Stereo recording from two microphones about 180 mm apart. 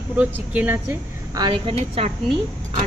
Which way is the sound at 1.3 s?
25° right (ahead or behind).